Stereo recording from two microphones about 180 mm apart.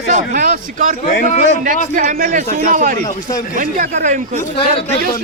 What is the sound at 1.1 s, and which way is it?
Speech, 50° left (ahead or behind).